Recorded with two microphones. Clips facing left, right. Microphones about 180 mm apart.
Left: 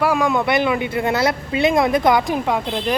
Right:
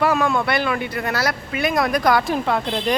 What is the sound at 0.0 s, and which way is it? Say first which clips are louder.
Speech: left 1 dB; 10° left (ahead or behind).